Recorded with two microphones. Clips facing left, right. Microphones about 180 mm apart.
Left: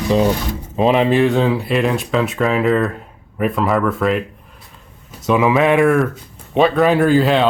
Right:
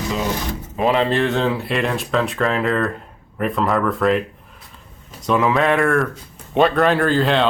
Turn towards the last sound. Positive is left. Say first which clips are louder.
# left 4 dB
turn(degrees=5)  # may be behind; listen again after turning